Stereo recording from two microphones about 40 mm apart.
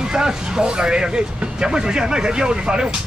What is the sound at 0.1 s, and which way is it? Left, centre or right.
Speech, centre.